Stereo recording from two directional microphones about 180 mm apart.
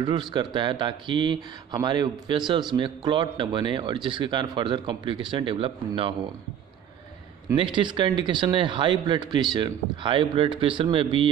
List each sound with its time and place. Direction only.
0.0 s speech: 25° right (ahead or behind)
7.5 s speech: 25° right (ahead or behind)